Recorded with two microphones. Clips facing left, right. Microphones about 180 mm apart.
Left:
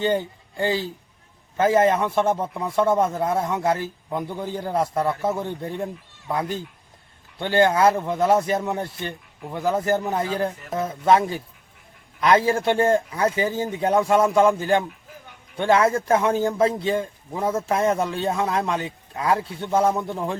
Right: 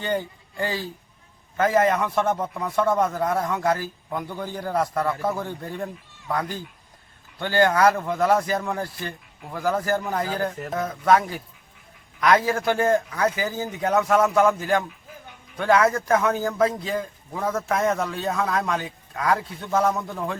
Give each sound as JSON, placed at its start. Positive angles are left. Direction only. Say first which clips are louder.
{"t": 0.0, "sound": "a man's voice", "louder": "left 4 dB", "side_deg": 25}